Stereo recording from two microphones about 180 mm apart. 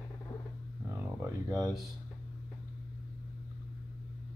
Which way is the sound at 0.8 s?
20° right (ahead or behind).